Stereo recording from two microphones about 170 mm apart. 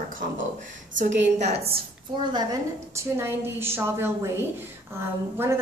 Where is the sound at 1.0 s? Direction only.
90° right.